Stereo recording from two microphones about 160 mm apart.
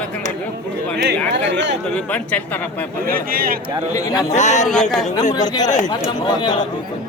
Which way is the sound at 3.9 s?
25° left (ahead or behind).